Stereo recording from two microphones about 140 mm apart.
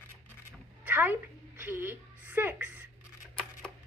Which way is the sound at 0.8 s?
15° right (ahead or behind).